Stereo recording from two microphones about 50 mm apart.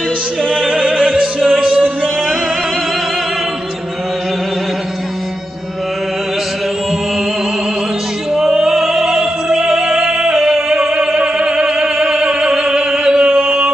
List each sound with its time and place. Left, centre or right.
0.6 s opera: right
1.6 s music: right
8.3 s opera: centre